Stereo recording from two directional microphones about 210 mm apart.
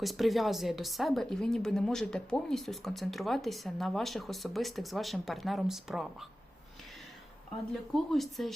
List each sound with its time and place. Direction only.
0.0 s speech: centre (ahead or behind)
8.1 s speech: centre (ahead or behind)